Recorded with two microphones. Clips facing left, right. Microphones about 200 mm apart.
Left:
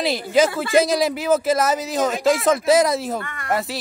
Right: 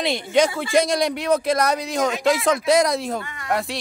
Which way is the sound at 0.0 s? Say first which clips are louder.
Left 1 dB; centre (ahead or behind).